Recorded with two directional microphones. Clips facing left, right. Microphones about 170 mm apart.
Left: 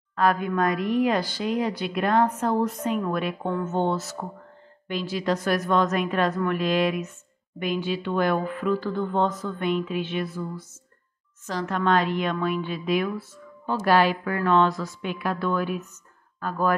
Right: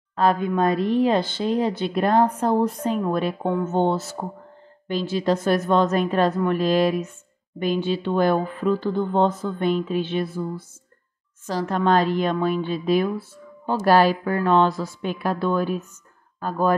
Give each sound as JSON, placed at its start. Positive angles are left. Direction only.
{"t": 0.1, "sound": "a woman's voice", "side_deg": -30}